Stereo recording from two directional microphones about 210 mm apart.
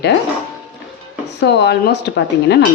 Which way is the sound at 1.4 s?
55° left (ahead or behind).